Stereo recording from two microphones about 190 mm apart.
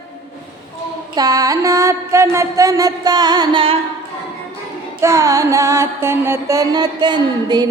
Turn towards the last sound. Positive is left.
turn(degrees=-20)  # may be behind; listen again after turning